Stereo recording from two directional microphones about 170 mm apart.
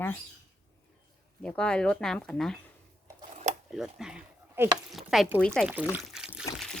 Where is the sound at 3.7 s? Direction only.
Centre (ahead or behind).